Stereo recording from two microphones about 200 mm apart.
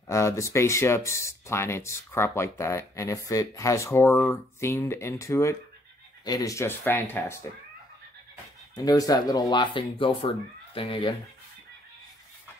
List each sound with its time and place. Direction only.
0.1 s speech: 15° left (ahead or behind)
8.7 s speech: 20° left (ahead or behind)